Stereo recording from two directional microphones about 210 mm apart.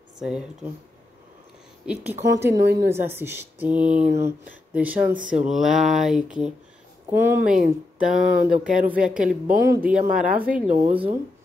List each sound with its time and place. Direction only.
0.2 s speech: centre (ahead or behind)
1.8 s speech: 5° right (ahead or behind)
2.2 s speech: 15° right (ahead or behind)
7.1 s speech: 10° right (ahead or behind)
9.9 s speech: 40° right (ahead or behind)
10.3 s speech: 5° right (ahead or behind)